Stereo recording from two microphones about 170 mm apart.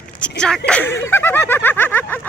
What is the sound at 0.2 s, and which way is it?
Speech, 5° left (ahead or behind).